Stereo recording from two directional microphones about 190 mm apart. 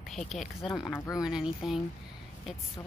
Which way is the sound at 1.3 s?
5° right (ahead or behind).